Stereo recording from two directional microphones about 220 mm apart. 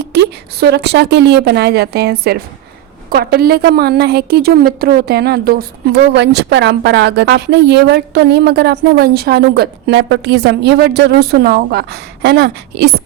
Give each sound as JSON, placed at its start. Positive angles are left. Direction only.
{"t": 0.0, "sound": "a woman's voice", "side_deg": -50}